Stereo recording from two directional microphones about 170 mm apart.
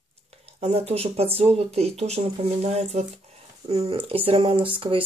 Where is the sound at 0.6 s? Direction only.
35° right (ahead or behind).